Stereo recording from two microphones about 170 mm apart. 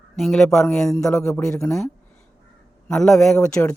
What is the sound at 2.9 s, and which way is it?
Speech, 5° left (ahead or behind).